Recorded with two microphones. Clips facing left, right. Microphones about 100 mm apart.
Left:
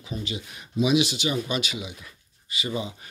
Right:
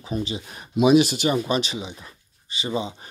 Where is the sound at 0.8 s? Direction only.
45° right (ahead or behind).